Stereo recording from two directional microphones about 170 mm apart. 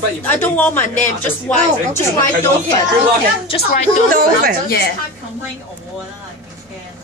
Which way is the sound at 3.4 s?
35° left (ahead or behind).